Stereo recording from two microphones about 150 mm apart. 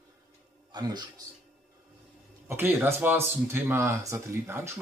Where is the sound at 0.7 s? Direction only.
30° right (ahead or behind).